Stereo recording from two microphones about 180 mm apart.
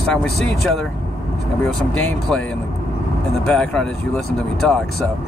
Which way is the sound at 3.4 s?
5° left (ahead or behind).